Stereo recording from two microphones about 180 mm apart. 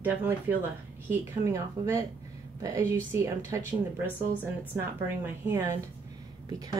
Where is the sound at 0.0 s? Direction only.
10° right (ahead or behind).